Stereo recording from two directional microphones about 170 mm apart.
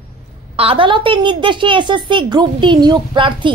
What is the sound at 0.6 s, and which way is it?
A woman's voice, 30° right (ahead or behind).